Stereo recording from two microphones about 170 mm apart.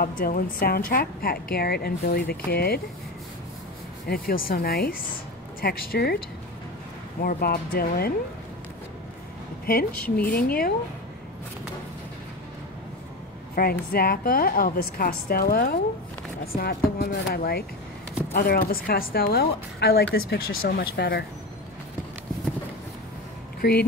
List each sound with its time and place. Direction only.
0.0 s a woman's voice: 60° left (ahead or behind)
4.1 s a woman's voice: 60° left (ahead or behind)
7.2 s a woman's voice: 60° left (ahead or behind)
10.1 s a woman's voice: 60° left (ahead or behind)
13.6 s a woman's voice: 60° left (ahead or behind)
23.6 s a woman's voice: 60° left (ahead or behind)